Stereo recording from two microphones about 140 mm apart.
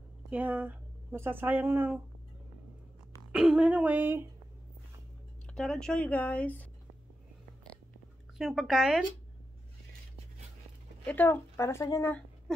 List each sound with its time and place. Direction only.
0.3 s speech: 10° right (ahead or behind)
3.3 s speech: 5° right (ahead or behind)
5.5 s speech: 5° left (ahead or behind)
8.4 s speech: 5° right (ahead or behind)
11.1 s speech: 15° left (ahead or behind)